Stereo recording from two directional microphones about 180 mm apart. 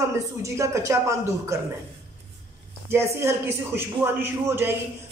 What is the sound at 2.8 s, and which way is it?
Speech, 15° right (ahead or behind).